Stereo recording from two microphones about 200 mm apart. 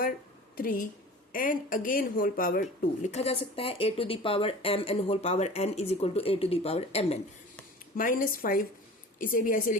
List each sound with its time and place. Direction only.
0.5 s a woman's voice: 45° left (ahead or behind)
7.9 s a woman's voice: 45° left (ahead or behind)